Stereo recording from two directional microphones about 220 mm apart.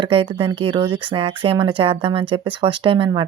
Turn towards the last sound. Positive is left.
turn(degrees=-20)  # may be behind; listen again after turning